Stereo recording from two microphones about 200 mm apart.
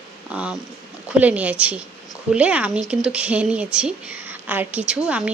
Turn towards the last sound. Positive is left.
turn(degrees=-5)  # may be behind; listen again after turning